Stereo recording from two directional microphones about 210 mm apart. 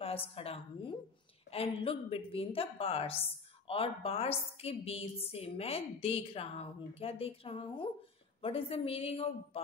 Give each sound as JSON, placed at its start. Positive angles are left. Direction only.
{"t": 0.0, "sound": "a woman's voice", "side_deg": 25}